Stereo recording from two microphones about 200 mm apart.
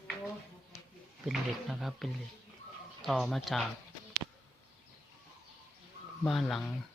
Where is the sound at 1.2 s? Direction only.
Centre (ahead or behind).